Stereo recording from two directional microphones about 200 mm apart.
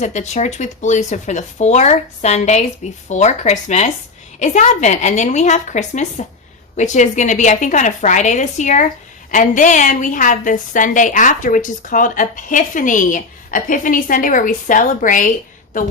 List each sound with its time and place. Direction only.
0.0 s a woman's voice: 35° left (ahead or behind)